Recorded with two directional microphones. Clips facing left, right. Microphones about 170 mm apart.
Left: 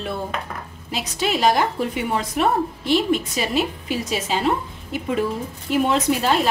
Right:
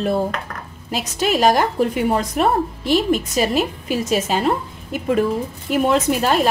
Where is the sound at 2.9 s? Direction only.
45° right (ahead or behind).